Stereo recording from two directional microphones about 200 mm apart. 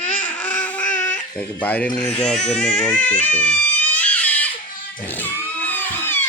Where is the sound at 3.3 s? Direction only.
10° left (ahead or behind).